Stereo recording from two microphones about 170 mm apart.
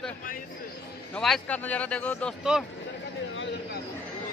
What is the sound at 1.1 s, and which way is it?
Speech, 5° left (ahead or behind).